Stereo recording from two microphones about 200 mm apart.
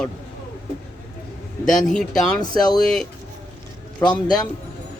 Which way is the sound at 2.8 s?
Centre (ahead or behind).